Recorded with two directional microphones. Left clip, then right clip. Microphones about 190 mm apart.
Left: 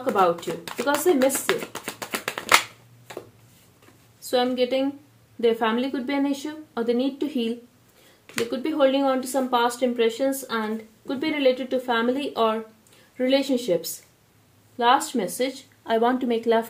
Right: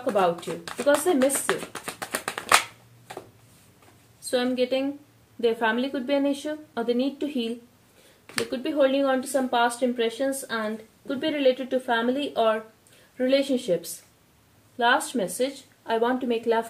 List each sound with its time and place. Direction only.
0.0 s speech: 30° left (ahead or behind)
0.8 s a sound: 25° left (ahead or behind)
4.3 s speech: 30° left (ahead or behind)